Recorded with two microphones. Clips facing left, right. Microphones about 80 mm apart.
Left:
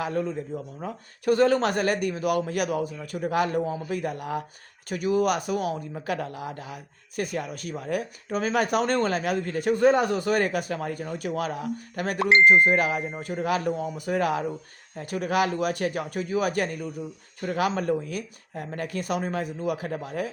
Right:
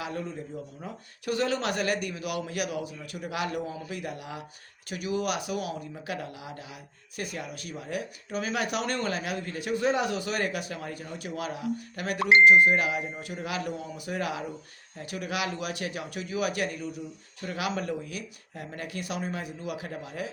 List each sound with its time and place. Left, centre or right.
0.8 s speech: left